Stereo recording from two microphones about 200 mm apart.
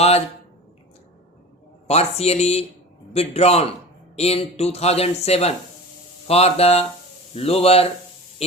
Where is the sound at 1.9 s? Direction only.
30° left (ahead or behind).